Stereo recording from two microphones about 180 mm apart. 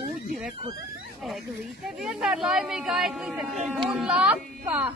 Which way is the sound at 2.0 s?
5° right (ahead or behind).